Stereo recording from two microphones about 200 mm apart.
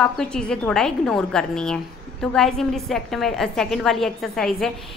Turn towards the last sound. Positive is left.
turn(degrees=0)  # may be behind; listen again after turning